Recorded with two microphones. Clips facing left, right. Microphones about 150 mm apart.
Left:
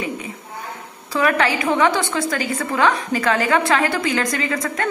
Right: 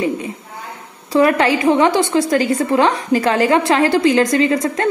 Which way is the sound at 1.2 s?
30° right (ahead or behind).